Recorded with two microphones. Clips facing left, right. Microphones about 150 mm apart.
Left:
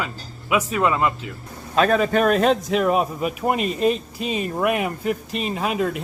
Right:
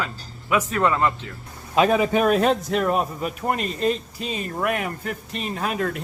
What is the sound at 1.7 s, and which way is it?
Speech, 10° right (ahead or behind).